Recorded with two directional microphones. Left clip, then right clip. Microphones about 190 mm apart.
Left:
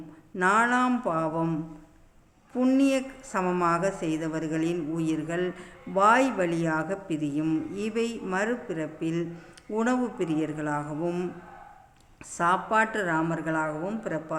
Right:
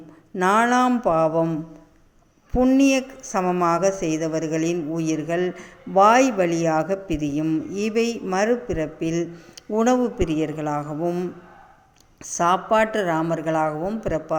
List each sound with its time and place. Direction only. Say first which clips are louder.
0.3 s a woman's voice: right 5 dB; 25° right (ahead or behind)
2.6 s a woman's voice: right 6 dB; 20° right (ahead or behind)
12.2 s a woman's voice: right 5 dB; 20° right (ahead or behind)